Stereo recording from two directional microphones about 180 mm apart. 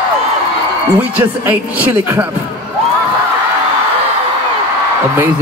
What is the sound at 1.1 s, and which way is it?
Speech, 10° right (ahead or behind).